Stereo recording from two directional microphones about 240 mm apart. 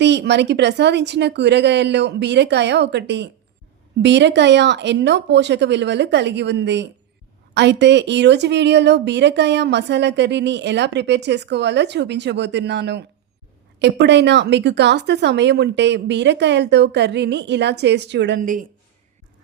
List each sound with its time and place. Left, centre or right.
0.0 s a woman's voice: right